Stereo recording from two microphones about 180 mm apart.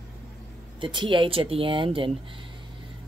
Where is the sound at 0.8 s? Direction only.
25° right (ahead or behind).